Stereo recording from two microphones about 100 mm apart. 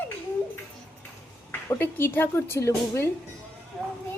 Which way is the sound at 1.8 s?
20° left (ahead or behind).